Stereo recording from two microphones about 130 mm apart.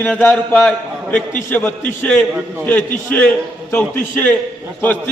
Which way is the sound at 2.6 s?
10° left (ahead or behind).